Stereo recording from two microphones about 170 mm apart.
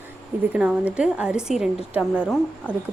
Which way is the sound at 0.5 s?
5° right (ahead or behind).